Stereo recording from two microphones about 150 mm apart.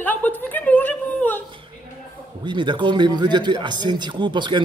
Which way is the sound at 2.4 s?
30° right (ahead or behind).